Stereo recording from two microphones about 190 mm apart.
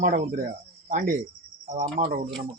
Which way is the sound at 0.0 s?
50° right (ahead or behind).